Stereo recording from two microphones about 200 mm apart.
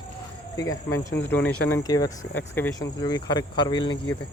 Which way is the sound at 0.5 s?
15° left (ahead or behind).